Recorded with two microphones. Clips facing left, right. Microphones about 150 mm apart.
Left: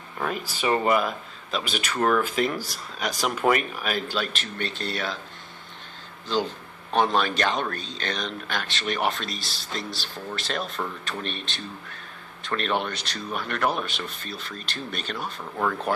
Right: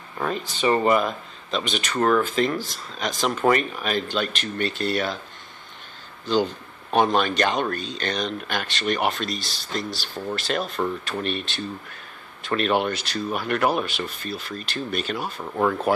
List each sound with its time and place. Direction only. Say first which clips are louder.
0.2 s speech: right 3 dB; 5° left (ahead or behind)
6.9 s speech: right 2 dB; 5° right (ahead or behind)
15.5 s speech: right 5 dB; 20° right (ahead or behind)